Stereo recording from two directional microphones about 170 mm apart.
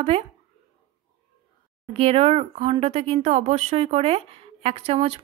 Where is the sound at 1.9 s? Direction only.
35° right (ahead or behind).